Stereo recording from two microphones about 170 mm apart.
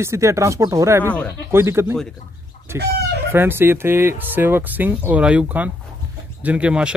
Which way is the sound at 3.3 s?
15° right (ahead or behind).